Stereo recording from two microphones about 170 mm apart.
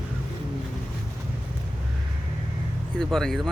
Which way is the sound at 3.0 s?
Centre (ahead or behind).